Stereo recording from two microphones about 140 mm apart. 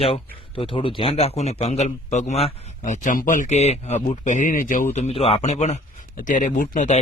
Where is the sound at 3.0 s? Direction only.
70° left (ahead or behind).